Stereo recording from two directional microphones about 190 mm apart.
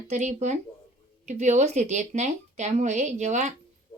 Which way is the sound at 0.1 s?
35° right (ahead or behind).